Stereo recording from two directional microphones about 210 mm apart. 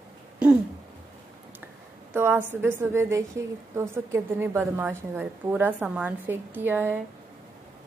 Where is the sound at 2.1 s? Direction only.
10° right (ahead or behind).